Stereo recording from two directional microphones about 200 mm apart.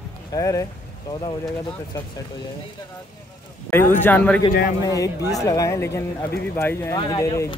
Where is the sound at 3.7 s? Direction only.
10° left (ahead or behind).